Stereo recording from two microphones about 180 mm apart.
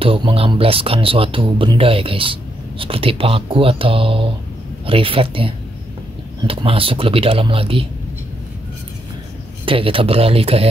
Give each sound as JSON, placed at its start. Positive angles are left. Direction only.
{"t": 0.0, "sound": "speech", "side_deg": -30}
{"t": 9.7, "sound": "speech", "side_deg": -30}